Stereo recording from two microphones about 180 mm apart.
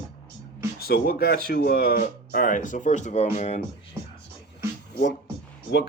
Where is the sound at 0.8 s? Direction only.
60° left (ahead or behind); by 3.6 s 40° left (ahead or behind).